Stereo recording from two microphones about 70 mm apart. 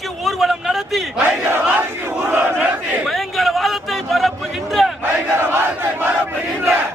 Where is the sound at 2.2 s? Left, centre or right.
Right.